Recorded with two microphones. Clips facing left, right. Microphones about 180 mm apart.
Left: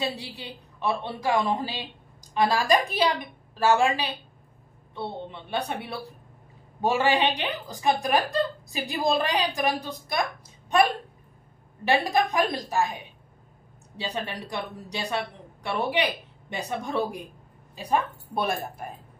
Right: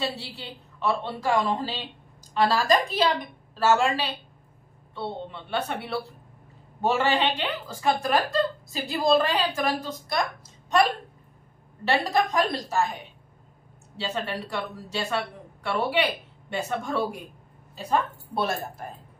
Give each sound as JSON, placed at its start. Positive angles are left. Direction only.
{"t": 0.0, "sound": "a woman's voice", "side_deg": 15}
{"t": 11.8, "sound": "a woman's voice", "side_deg": 15}
{"t": 13.9, "sound": "a woman's voice", "side_deg": 15}